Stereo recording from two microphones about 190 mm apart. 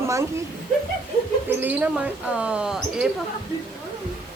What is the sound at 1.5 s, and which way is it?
Speech, 10° right (ahead or behind).